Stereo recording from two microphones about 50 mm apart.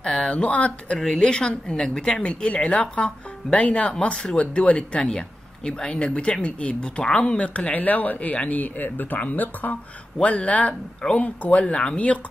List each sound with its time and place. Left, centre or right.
0.0 s speech: centre
0.9 s speech: centre